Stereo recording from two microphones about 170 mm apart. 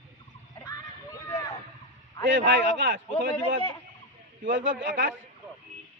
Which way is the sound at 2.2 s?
90° right.